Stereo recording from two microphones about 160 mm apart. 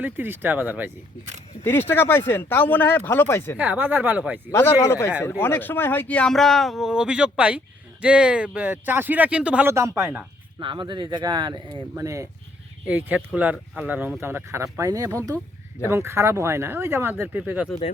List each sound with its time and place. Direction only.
0.0 s speech: 10° right (ahead or behind)
1.9 s speech: 15° left (ahead or behind)
3.6 s speech: 10° right (ahead or behind)
4.5 s speech: 15° left (ahead or behind); by 10.2 s 15° right (ahead or behind)
10.6 s speech: 30° right (ahead or behind); by 17.7 s 10° right (ahead or behind)